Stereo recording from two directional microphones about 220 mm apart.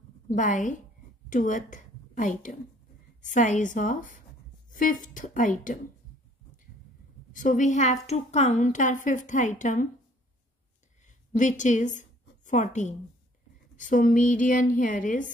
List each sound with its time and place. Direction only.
0.3 s a woman's voice: 35° left (ahead or behind)
7.3 s a woman's voice: 35° left (ahead or behind)
11.3 s a woman's voice: 35° left (ahead or behind)